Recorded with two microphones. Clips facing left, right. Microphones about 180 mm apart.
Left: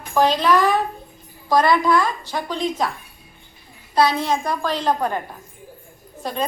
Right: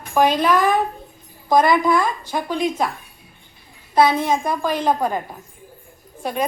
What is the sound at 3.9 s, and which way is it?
Speech, 50° right (ahead or behind).